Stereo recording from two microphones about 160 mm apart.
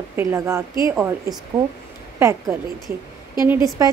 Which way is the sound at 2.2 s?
15° right (ahead or behind).